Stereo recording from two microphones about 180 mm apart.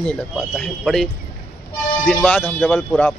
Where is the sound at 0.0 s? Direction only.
5° left (ahead or behind).